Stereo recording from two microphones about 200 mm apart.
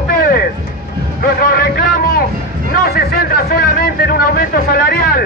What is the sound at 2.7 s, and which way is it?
Speech, 50° left (ahead or behind).